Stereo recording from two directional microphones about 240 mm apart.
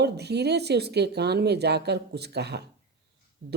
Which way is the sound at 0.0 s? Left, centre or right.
Right.